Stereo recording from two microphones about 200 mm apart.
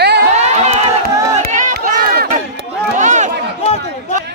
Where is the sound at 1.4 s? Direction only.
45° right (ahead or behind).